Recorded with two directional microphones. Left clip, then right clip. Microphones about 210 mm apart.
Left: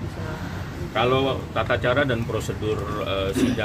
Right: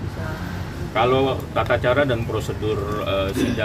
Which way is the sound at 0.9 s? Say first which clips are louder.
Right 3 dB; 15° left (ahead or behind).